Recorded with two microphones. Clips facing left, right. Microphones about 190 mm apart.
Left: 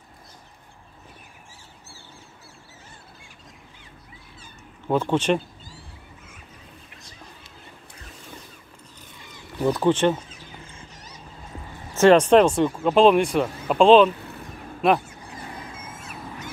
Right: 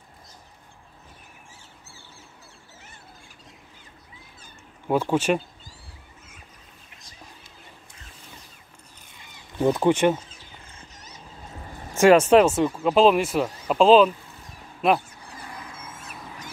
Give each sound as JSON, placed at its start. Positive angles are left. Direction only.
{"t": 4.8, "sound": "speech", "side_deg": -10}
{"t": 9.6, "sound": "speech", "side_deg": -15}
{"t": 11.9, "sound": "speech", "side_deg": -10}
{"t": 14.1, "sound": "a sound", "side_deg": 65}
{"t": 14.8, "sound": "speech", "side_deg": 0}